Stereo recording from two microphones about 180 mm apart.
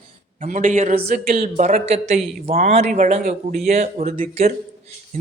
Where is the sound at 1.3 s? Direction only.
40° right (ahead or behind).